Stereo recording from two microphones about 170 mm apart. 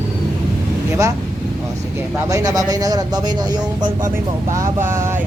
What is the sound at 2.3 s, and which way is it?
Speech, 20° right (ahead or behind).